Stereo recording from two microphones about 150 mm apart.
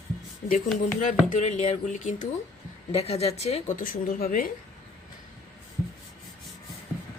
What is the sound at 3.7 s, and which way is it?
Speech, 75° left (ahead or behind).